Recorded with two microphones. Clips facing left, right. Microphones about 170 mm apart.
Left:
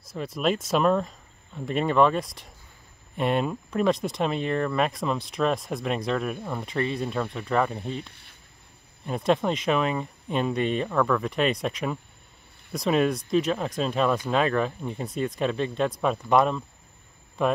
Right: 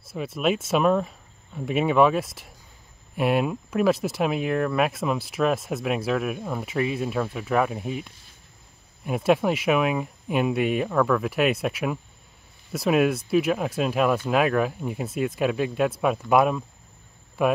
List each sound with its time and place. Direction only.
0.1 s speech: 5° right (ahead or behind)
8.1 s a sound: 65° left (ahead or behind)
9.0 s speech: 5° right (ahead or behind)